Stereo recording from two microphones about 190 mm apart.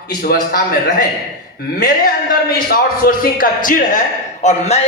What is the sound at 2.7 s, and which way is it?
A man's voice, 50° left (ahead or behind).